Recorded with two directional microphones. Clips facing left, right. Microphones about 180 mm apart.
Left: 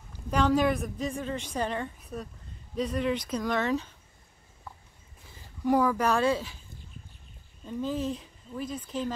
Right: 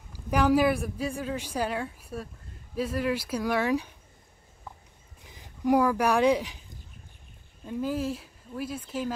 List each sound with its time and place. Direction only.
0.1 s a woman's voice: 10° right (ahead or behind)
5.2 s speech: 15° right (ahead or behind)
7.6 s a woman's voice: 10° right (ahead or behind)